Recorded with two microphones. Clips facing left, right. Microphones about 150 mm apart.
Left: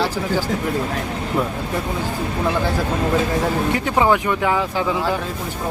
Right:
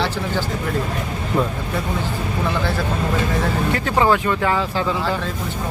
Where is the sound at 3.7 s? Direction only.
15° left (ahead or behind).